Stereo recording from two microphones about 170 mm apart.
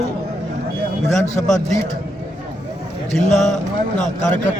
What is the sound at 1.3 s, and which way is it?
Speech, 45° left (ahead or behind).